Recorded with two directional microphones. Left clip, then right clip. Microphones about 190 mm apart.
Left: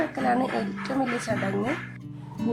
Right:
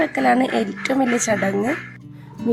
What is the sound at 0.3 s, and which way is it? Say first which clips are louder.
Speech: right 7 dB; 20° right (ahead or behind).